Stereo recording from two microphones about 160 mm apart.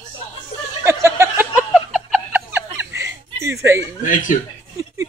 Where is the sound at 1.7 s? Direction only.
5° right (ahead or behind).